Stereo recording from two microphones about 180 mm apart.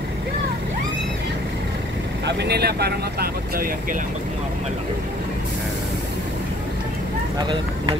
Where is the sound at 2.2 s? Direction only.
65° right (ahead or behind).